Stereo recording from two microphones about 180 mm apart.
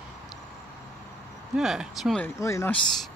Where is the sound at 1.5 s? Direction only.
Centre (ahead or behind).